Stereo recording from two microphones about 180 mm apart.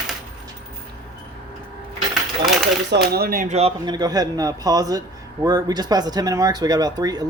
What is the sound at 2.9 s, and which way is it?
Speech, 60° right (ahead or behind).